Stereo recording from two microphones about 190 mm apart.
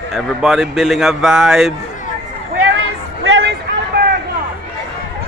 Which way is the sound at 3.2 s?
90° right.